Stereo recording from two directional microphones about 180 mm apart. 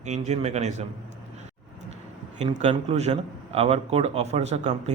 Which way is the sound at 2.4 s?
40° right (ahead or behind).